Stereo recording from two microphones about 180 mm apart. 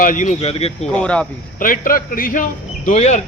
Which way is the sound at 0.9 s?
5° left (ahead or behind).